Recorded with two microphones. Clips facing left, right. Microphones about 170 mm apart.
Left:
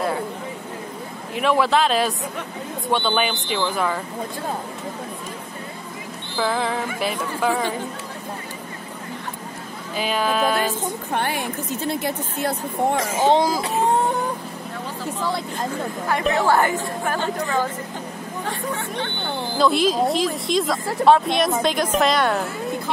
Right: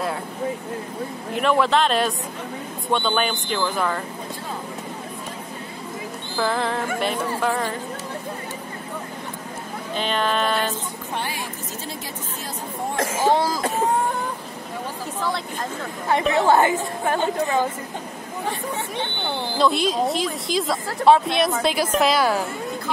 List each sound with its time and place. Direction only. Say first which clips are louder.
1.3 s speech: even; centre (ahead or behind)
6.3 s speech: left 1 dB; centre (ahead or behind)
9.9 s speech: left 1 dB; 5° left (ahead or behind)
10.8 s a woman's voice: left 5 dB; 55° left (ahead or behind)
13.2 s speech: left 2 dB; 25° left (ahead or behind)
16.3 s speech: right 2 dB; 20° right (ahead or behind)
19.5 s speech: left 2 dB; centre (ahead or behind)